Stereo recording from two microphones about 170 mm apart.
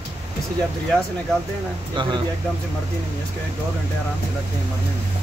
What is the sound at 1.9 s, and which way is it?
Speech, 25° right (ahead or behind).